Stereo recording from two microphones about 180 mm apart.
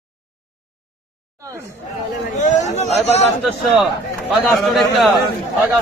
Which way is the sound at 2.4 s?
40° left (ahead or behind).